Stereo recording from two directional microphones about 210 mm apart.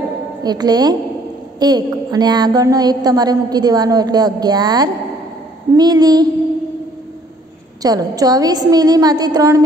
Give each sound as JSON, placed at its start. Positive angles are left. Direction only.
{"t": 0.4, "sound": "a woman's voice", "side_deg": -20}
{"t": 7.8, "sound": "a woman's voice", "side_deg": -15}